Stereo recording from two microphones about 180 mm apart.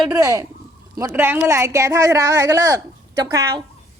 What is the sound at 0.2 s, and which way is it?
A woman's voice, 20° right (ahead or behind).